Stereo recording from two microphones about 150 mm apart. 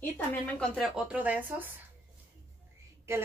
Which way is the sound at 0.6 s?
Centre (ahead or behind).